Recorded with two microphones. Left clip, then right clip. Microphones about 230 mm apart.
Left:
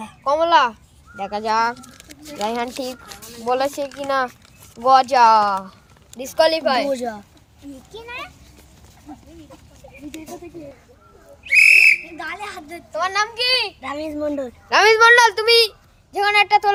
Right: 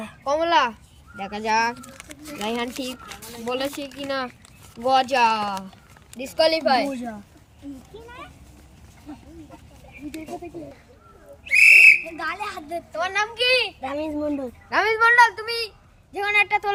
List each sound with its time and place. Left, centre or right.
0.3 s a child's voice: centre
1.7 s speech: centre
2.4 s a child's voice: centre
6.9 s speech: left
11.4 s whistle: centre
12.9 s a child's voice: centre
14.2 s a woman's voice: left
16.1 s a woman's voice: left